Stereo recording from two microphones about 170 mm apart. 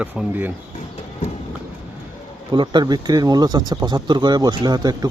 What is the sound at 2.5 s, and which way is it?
Speech, 25° right (ahead or behind).